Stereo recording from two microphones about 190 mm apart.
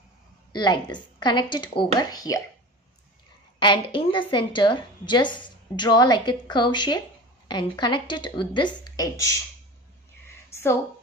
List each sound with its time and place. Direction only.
0.5 s speech: 20° left (ahead or behind)
3.5 s speech: 25° left (ahead or behind)
10.2 s a sound: 15° left (ahead or behind)